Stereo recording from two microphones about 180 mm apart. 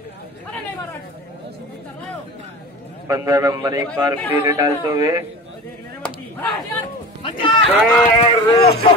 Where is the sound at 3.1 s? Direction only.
20° right (ahead or behind).